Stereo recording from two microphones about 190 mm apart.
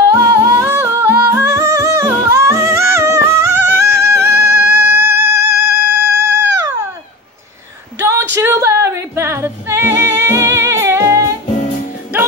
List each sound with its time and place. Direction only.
0.0 s music: 15° right (ahead or behind)
5.3 s music: 55° right (ahead or behind)
6.3 s music: 15° right (ahead or behind)
8.0 s a sound: 15° right (ahead or behind)
8.4 s music: 15° right (ahead or behind)